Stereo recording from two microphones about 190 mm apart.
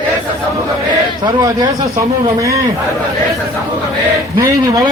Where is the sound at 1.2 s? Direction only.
20° right (ahead or behind).